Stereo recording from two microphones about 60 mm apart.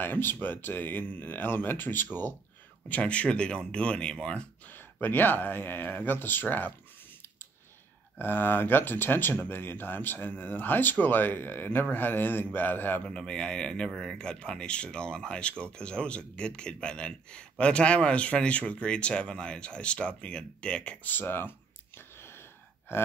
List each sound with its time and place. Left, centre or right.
0.0 s speech: left
2.9 s speech: left
5.0 s speech: left
8.2 s speech: left
13.0 s speech: centre
21.1 s gasp: left